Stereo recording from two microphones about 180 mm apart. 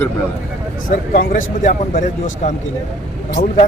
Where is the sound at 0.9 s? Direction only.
50° left (ahead or behind).